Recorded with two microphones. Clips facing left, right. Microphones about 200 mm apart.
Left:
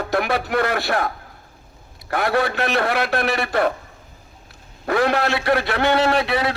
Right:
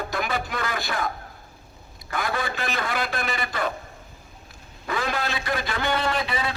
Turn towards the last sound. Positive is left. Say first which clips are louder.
# left 7 dB
turn(degrees=70)  # may be behind; listen again after turning